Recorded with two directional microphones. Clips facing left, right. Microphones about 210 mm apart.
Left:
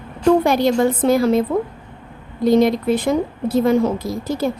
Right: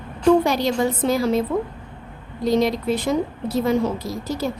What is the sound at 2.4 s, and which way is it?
A woman's voice, 50° left (ahead or behind).